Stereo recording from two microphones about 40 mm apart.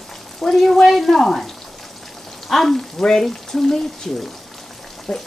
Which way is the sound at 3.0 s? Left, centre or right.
Centre.